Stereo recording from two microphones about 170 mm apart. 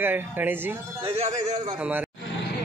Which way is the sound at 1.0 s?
35° right (ahead or behind).